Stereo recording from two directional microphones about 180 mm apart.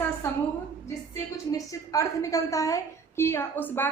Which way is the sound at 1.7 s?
20° left (ahead or behind).